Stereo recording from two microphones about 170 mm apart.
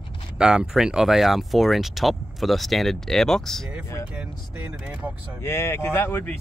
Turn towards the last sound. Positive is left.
turn(degrees=10)  # may be behind; listen again after turning